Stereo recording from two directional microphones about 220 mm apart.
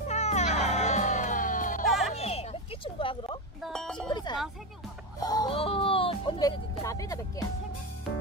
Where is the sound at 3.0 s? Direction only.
25° left (ahead or behind).